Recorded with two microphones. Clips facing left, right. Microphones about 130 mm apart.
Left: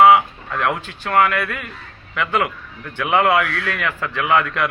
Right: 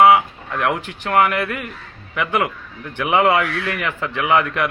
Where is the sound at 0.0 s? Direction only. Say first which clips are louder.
Left 1 dB; 15° right (ahead or behind).